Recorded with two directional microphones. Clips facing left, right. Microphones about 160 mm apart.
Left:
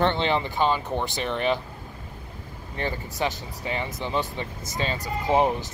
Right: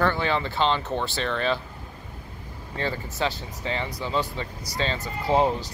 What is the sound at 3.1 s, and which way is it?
Speech, 15° left (ahead or behind).